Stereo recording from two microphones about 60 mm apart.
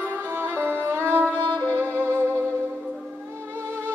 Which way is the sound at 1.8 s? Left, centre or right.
Right.